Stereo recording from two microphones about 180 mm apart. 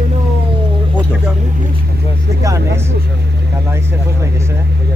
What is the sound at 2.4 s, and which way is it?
Vehicle, 15° right (ahead or behind).